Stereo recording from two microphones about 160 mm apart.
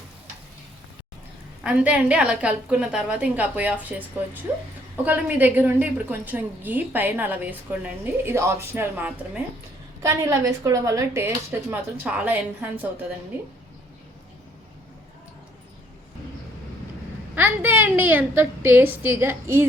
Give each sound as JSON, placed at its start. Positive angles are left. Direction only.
{"t": 1.6, "sound": "a woman's voice", "side_deg": -10}
{"t": 5.0, "sound": "a woman's voice", "side_deg": -10}
{"t": 11.7, "sound": "a woman's voice", "side_deg": -10}
{"t": 17.3, "sound": "a woman's voice", "side_deg": -10}